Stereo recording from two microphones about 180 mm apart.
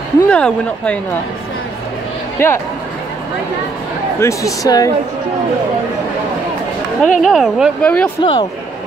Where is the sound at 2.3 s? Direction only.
15° left (ahead or behind).